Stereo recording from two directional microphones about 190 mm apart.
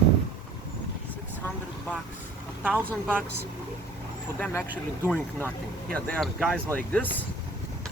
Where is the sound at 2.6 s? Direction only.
10° right (ahead or behind).